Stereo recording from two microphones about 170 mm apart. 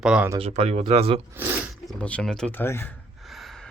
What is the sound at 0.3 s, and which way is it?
Speech, 35° right (ahead or behind).